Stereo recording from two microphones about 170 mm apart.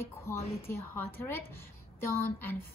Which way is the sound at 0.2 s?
15° left (ahead or behind).